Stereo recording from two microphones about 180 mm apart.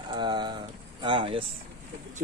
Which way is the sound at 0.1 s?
25° right (ahead or behind).